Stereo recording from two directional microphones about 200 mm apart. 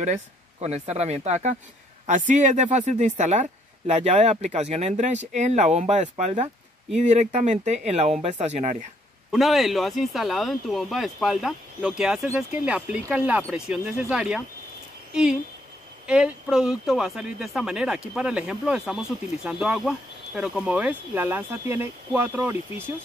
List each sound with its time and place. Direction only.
0.0 s speech: 35° right (ahead or behind)
9.3 s speech: centre (ahead or behind)
16.1 s speech: 5° right (ahead or behind)